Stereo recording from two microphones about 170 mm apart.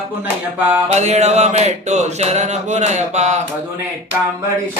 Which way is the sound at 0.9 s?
40° right (ahead or behind).